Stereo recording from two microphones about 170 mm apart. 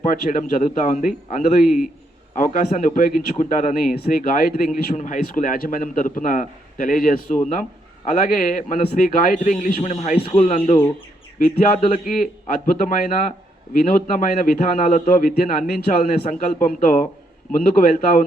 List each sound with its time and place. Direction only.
0.0 s speech: 50° left (ahead or behind)
3.9 s speech: 60° left (ahead or behind); by 10.5 s 30° left (ahead or behind)
11.3 s a man's voice: 55° left (ahead or behind)